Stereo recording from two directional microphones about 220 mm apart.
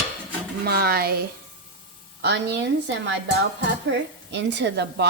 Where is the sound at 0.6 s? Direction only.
45° right (ahead or behind).